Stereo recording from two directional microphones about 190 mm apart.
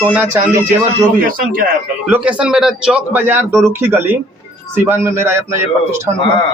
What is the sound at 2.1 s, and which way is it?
A man's voice, 5° right (ahead or behind).